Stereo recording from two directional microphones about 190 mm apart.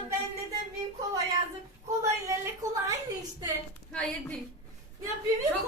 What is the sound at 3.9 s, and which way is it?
Speech, 5° left (ahead or behind).